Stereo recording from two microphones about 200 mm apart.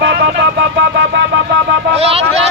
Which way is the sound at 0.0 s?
55° right (ahead or behind).